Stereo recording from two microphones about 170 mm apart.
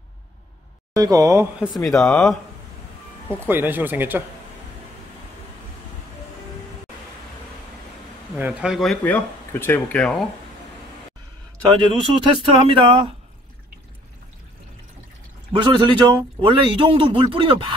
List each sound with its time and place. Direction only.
0.9 s speech: 20° right (ahead or behind)
1.6 s speech: centre (ahead or behind)
3.4 s speech: 10° right (ahead or behind)
8.4 s speech: 10° right (ahead or behind); by 10.2 s 5° left (ahead or behind)
11.8 s speech: 25° right (ahead or behind)
15.5 s speech: 30° right (ahead or behind)